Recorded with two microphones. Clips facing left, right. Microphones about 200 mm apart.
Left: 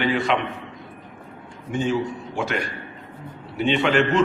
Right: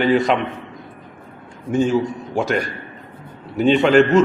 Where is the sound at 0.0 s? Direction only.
40° right (ahead or behind).